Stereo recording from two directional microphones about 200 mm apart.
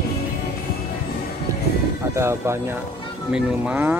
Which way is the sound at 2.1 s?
15° right (ahead or behind).